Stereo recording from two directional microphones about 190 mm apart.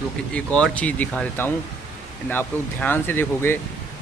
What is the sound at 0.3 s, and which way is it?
A man's voice, 5° left (ahead or behind).